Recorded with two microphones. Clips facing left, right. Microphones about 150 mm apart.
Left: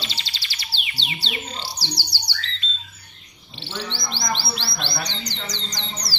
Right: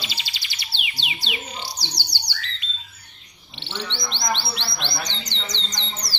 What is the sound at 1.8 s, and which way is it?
Bird, 20° right (ahead or behind).